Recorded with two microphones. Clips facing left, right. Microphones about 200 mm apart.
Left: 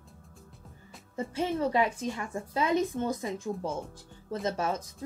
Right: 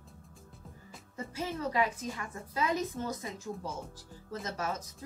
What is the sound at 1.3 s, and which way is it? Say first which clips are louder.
A woman's voice: left 5 dB; 30° left (ahead or behind).